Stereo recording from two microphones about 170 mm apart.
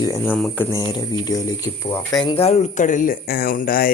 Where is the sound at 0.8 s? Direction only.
20° left (ahead or behind).